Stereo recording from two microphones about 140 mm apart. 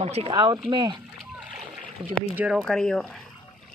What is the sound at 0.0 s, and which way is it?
Speech, 45° right (ahead or behind).